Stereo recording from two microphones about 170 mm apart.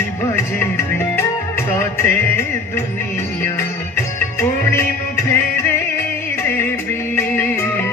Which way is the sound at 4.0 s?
15° left (ahead or behind).